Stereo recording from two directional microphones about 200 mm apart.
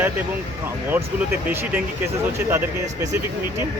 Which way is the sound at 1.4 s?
10° right (ahead or behind).